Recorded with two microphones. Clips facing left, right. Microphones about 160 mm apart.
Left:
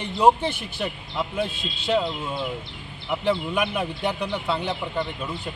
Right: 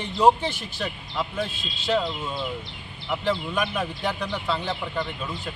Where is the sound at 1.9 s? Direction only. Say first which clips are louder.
Left 1 dB; 10° left (ahead or behind).